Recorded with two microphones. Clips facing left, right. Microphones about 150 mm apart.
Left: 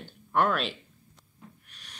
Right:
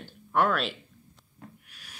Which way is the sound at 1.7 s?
5° right (ahead or behind).